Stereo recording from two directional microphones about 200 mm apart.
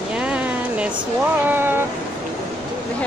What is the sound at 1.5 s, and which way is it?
Speech, 10° right (ahead or behind).